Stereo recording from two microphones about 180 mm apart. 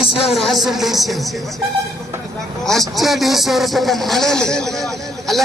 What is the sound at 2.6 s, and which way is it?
Speech, centre (ahead or behind).